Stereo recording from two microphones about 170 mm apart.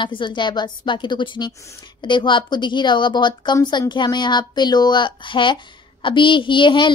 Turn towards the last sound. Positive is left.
turn(degrees=30)  # may be behind; listen again after turning